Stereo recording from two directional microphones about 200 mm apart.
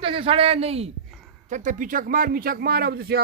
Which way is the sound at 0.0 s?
25° right (ahead or behind).